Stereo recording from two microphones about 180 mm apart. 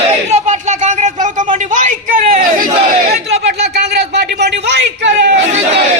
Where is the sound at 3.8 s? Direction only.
70° right (ahead or behind).